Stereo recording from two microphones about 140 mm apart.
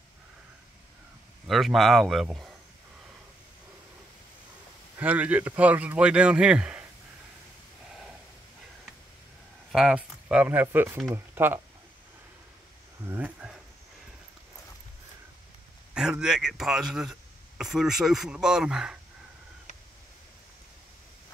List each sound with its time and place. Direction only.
1.5 s speech: centre (ahead or behind)
4.9 s speech: 10° right (ahead or behind)
9.7 s speech: 5° right (ahead or behind)
13.0 s speech: 15° right (ahead or behind)
15.9 s speech: 5° right (ahead or behind)